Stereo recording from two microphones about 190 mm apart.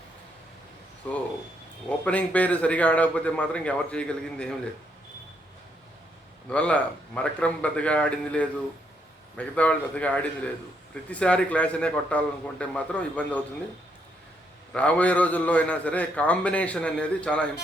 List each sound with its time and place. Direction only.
2.0 s a man's voice: 5° left (ahead or behind)
6.5 s a man's voice: 5° left (ahead or behind)
14.7 s a man's voice: 5° left (ahead or behind)